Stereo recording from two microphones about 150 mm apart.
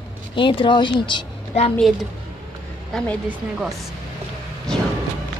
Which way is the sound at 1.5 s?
45° left (ahead or behind).